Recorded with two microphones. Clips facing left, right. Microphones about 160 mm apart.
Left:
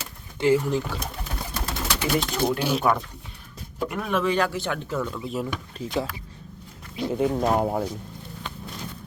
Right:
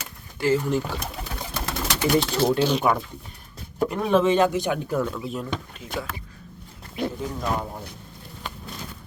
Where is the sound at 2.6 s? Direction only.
10° left (ahead or behind).